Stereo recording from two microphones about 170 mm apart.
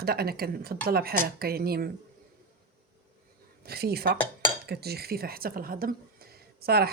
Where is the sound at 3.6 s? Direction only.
65° right (ahead or behind).